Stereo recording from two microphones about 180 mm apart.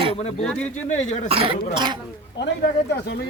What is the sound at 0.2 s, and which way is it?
Speech, 35° left (ahead or behind).